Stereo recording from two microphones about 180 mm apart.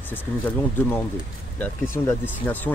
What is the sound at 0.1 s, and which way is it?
Speech, 10° left (ahead or behind).